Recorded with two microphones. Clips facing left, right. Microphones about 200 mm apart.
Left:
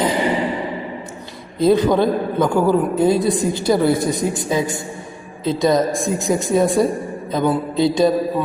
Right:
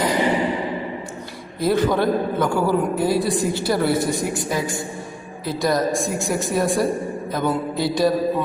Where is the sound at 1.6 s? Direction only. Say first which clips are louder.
Left 4 dB; 20° left (ahead or behind).